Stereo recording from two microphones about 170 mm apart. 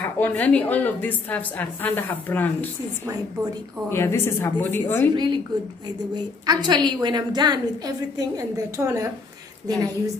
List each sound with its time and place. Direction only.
0.0 s a woman's voice: 10° left (ahead or behind)
3.9 s a woman's voice: 15° left (ahead or behind)
5.1 s a woman's voice: 25° right (ahead or behind)